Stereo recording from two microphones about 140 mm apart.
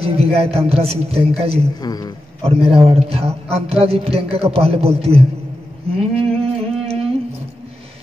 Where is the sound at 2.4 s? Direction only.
45° right (ahead or behind).